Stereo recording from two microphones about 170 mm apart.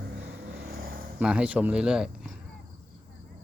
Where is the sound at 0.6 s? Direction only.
60° right (ahead or behind).